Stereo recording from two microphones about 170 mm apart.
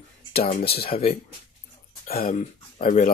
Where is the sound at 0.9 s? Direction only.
35° left (ahead or behind).